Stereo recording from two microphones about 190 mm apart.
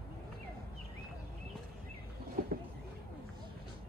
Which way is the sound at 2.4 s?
50° right (ahead or behind).